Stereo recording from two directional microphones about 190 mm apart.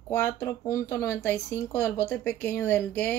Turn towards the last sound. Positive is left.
turn(degrees=10)  # may be behind; listen again after turning